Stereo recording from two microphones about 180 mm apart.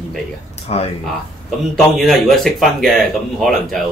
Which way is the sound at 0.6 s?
35° left (ahead or behind).